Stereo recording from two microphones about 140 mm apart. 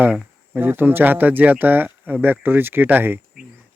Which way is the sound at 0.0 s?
10° right (ahead or behind).